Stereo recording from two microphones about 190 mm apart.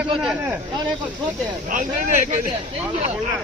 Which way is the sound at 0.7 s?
25° right (ahead or behind).